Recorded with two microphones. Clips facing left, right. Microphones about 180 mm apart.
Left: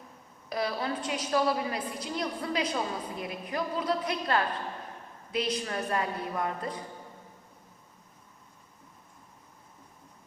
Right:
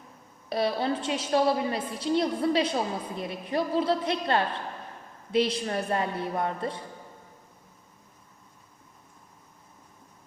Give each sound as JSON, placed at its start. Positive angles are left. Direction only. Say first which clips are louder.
{"t": 0.5, "sound": "a woman's voice", "louder": "right 5 dB", "side_deg": -30}